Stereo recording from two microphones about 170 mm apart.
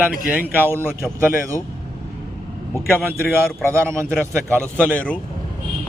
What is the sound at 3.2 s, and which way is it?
A man's voice, 15° right (ahead or behind).